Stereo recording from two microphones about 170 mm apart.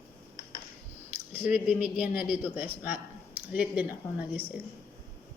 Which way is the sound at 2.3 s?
10° right (ahead or behind).